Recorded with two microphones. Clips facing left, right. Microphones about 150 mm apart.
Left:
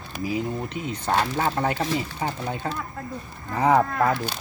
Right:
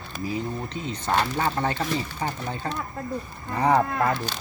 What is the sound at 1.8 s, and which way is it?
Speech, 15° left (ahead or behind).